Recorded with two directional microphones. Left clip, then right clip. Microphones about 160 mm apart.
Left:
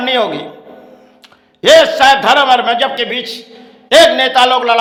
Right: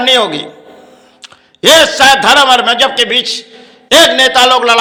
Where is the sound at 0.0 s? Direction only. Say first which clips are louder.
Right 4 dB; 15° right (ahead or behind).